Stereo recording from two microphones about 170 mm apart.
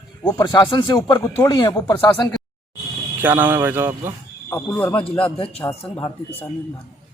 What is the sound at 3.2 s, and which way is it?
Speech, 10° right (ahead or behind).